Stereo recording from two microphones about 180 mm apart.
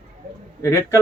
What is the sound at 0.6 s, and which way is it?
Speech, 15° left (ahead or behind).